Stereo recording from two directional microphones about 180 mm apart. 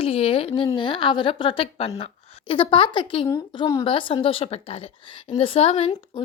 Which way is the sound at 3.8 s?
30° left (ahead or behind).